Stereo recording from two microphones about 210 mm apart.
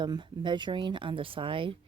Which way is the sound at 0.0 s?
20° right (ahead or behind).